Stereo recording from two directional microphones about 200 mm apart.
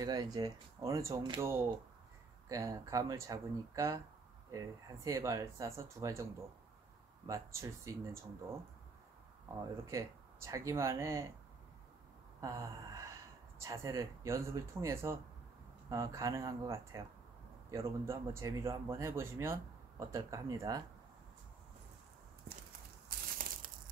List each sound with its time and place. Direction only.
0.0 s speech: 20° right (ahead or behind)
7.2 s speech: 15° right (ahead or behind)
9.8 s speech: 15° right (ahead or behind)
12.4 s sigh: 15° right (ahead or behind)
13.6 s speech: 15° right (ahead or behind)
23.0 s crumpling: 45° right (ahead or behind)